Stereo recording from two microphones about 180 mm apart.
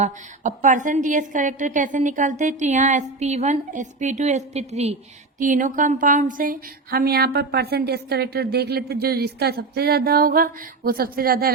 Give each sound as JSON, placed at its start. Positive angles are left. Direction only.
{"t": 0.0, "sound": "a woman's voice", "side_deg": -45}